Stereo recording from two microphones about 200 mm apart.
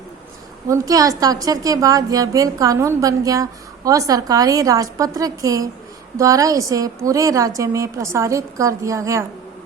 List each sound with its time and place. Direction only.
0.7 s a woman's voice: 15° right (ahead or behind)